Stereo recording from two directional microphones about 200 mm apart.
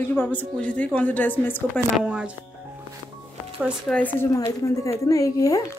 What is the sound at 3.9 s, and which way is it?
Speech, 10° left (ahead or behind).